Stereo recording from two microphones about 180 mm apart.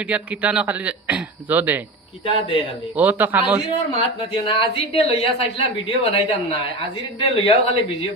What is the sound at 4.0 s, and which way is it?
A woman's voice, 30° left (ahead or behind).